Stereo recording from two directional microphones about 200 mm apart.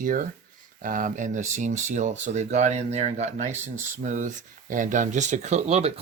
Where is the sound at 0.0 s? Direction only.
45° right (ahead or behind).